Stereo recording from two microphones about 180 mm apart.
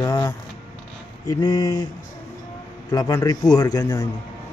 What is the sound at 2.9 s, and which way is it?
A man's voice, 20° left (ahead or behind).